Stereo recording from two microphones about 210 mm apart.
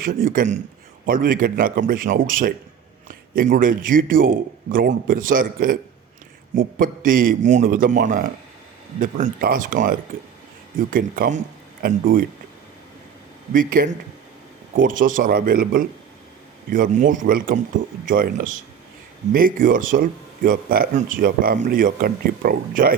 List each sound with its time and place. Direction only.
0.0 s speech: 40° right (ahead or behind)
13.5 s speech: 40° right (ahead or behind)